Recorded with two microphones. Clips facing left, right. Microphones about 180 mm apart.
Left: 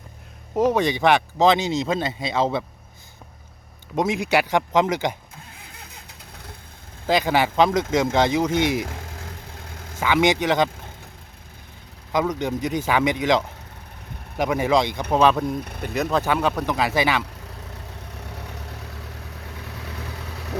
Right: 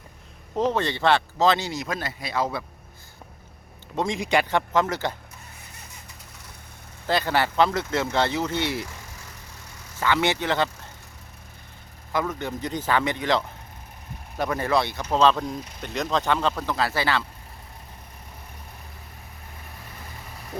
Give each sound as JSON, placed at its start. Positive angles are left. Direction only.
{"t": 0.5, "sound": "speech", "side_deg": 10}
{"t": 3.9, "sound": "speech", "side_deg": 5}
{"t": 5.5, "sound": "a sound", "side_deg": 90}
{"t": 7.1, "sound": "speech", "side_deg": 15}
{"t": 9.2, "sound": "vehicle", "side_deg": 90}
{"t": 10.0, "sound": "speech", "side_deg": 15}
{"t": 12.1, "sound": "speech", "side_deg": 15}
{"t": 18.1, "sound": "vehicle", "side_deg": 75}